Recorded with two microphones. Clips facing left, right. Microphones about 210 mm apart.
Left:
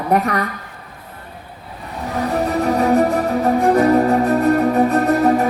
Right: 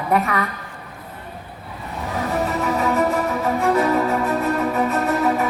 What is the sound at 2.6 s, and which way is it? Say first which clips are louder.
Music: left 7 dB; 40° left (ahead or behind).